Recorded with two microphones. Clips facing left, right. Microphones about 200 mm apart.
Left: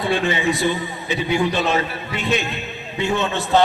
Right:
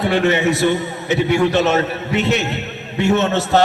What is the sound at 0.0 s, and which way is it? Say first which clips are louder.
A man's voice: right 4 dB; 70° right (ahead or behind).